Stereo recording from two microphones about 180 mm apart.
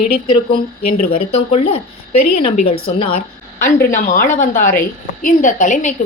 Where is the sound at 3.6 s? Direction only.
45° left (ahead or behind).